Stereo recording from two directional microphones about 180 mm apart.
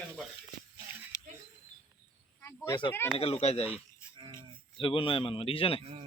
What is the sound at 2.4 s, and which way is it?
Cricket, 15° left (ahead or behind).